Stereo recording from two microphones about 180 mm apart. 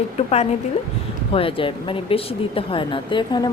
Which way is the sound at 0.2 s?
35° left (ahead or behind).